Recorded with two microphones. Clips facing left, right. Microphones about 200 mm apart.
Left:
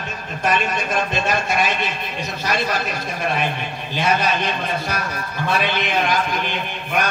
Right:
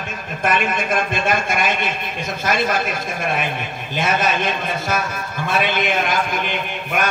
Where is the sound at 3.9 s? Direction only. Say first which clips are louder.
Even; 50° right (ahead or behind).